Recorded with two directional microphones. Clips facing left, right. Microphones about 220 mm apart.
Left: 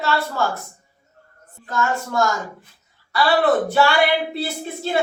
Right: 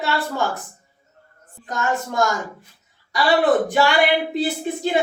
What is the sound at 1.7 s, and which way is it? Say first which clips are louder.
Speech: left 1 dB; 15° right (ahead or behind).